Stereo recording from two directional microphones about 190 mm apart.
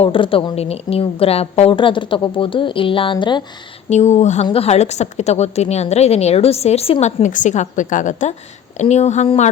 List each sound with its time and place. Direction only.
0.0 s a woman's voice: 30° left (ahead or behind)
3.8 s a woman's voice: 35° left (ahead or behind)